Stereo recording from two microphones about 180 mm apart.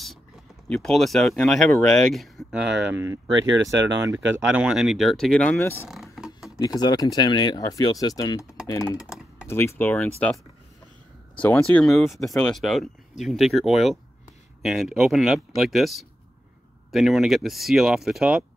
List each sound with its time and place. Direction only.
0.7 s speech: centre (ahead or behind); by 4.2 s 15° right (ahead or behind)
4.5 s speech: 5° right (ahead or behind); by 5.9 s 10° left (ahead or behind)
5.9 s a sound: centre (ahead or behind)
6.8 s speech: 20° left (ahead or behind)
8.9 s typing: 5° right (ahead or behind)
9.5 s speech: 15° left (ahead or behind)
11.3 s speech: 10° left (ahead or behind)